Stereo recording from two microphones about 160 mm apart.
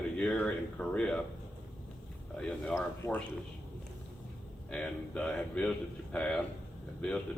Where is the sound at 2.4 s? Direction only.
5° left (ahead or behind).